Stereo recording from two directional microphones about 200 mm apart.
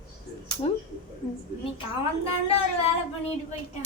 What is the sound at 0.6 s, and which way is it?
Speech, 25° left (ahead or behind).